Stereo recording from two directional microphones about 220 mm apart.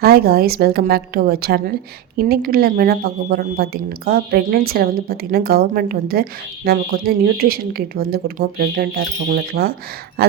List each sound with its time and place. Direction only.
0.0 s speech: 45° right (ahead or behind)